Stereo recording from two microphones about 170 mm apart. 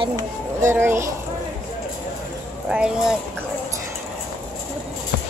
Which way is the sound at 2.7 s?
5° right (ahead or behind).